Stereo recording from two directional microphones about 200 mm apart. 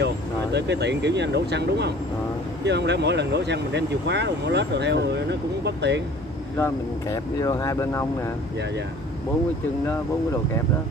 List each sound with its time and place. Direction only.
0.0 s speech: 60° right (ahead or behind)
6.5 s speech: 15° left (ahead or behind)